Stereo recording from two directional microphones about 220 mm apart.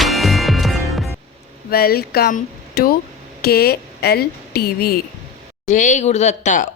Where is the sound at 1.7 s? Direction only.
45° left (ahead or behind).